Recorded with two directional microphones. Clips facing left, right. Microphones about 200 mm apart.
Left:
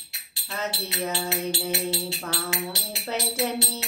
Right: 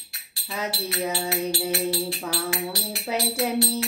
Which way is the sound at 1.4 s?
20° left (ahead or behind).